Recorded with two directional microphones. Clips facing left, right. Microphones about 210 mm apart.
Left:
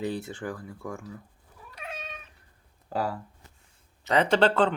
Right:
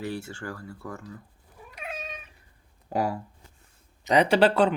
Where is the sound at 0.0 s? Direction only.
20° left (ahead or behind).